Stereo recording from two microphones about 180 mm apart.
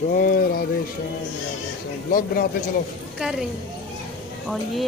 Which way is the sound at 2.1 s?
55° left (ahead or behind).